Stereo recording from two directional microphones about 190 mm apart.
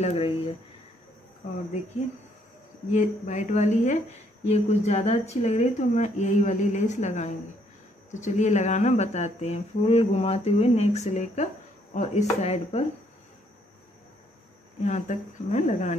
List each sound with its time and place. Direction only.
0.0 s speech: 35° left (ahead or behind)
2.9 s speech: 40° left (ahead or behind)
14.8 s speech: 40° left (ahead or behind)